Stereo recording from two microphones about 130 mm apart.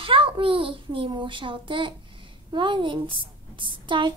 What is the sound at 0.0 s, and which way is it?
A child's voice, 45° right (ahead or behind).